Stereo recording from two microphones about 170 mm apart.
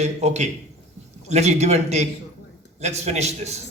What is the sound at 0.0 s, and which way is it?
A man's voice, 40° right (ahead or behind).